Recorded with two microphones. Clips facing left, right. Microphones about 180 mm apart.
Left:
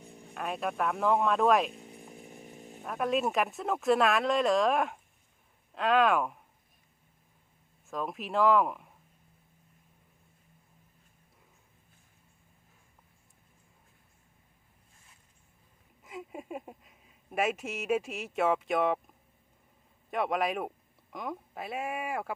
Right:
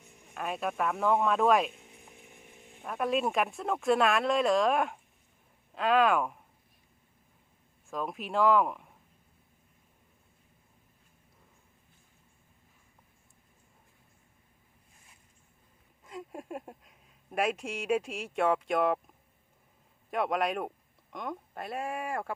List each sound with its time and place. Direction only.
0.0 s a sound: 35° left (ahead or behind)
0.3 s speech: centre (ahead or behind)
1.9 s chainsaw: 35° left (ahead or behind)
2.8 s speech: centre (ahead or behind)
7.9 s speech: centre (ahead or behind)
16.0 s speech: 5° left (ahead or behind)
20.1 s speech: centre (ahead or behind)